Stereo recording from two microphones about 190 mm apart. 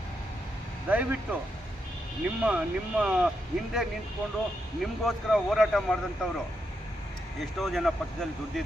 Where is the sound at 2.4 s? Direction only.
5° right (ahead or behind).